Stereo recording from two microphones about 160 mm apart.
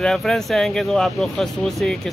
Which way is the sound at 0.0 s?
5° left (ahead or behind).